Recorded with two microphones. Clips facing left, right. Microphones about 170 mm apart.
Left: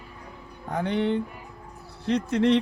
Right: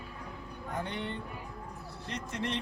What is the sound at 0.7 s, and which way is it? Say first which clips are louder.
Speech: left 12 dB; 80° left.